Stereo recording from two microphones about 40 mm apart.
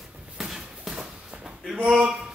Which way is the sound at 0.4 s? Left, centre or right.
Centre.